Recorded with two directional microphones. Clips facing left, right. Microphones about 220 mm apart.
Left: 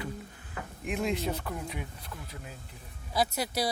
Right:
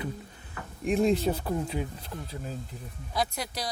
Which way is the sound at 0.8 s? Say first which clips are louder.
Right 7 dB; 35° right (ahead or behind).